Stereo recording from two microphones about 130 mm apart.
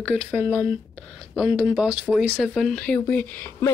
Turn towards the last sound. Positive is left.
turn(degrees=15)  # may be behind; listen again after turning